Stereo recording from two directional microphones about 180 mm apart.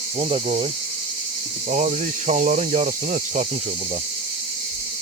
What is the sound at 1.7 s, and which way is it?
Speech, 40° right (ahead or behind).